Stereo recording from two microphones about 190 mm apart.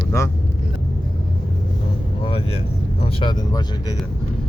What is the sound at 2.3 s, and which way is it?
Vehicle, 30° left (ahead or behind).